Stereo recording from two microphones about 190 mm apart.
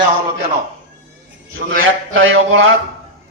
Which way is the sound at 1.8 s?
90° right.